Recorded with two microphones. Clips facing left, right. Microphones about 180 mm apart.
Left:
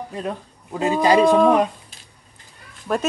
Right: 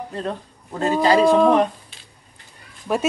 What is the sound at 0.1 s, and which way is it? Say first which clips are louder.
Speech: right 1 dB; 10° left (ahead or behind).